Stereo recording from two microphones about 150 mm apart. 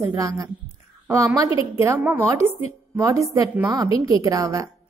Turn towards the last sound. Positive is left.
turn(degrees=-20)  # may be behind; listen again after turning